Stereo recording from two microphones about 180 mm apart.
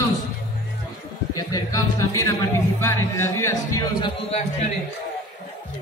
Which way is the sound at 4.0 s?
35° left (ahead or behind).